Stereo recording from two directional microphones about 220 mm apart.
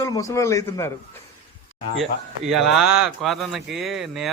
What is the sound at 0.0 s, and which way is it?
Speech, 15° left (ahead or behind).